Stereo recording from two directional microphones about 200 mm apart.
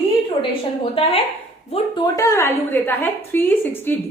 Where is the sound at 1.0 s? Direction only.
25° left (ahead or behind).